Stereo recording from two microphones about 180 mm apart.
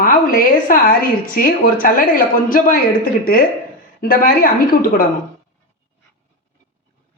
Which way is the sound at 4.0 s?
50° left (ahead or behind).